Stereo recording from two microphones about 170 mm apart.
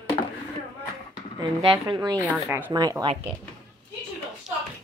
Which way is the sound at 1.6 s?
30° right (ahead or behind).